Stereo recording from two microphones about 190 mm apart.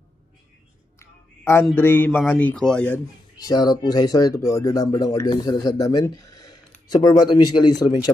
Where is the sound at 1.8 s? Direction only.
10° left (ahead or behind).